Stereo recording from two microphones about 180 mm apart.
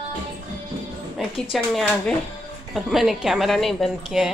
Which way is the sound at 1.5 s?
Centre (ahead or behind).